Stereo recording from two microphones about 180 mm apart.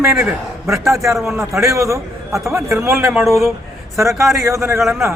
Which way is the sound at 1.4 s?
15° right (ahead or behind).